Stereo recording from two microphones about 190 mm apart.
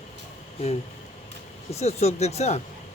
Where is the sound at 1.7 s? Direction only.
35° left (ahead or behind).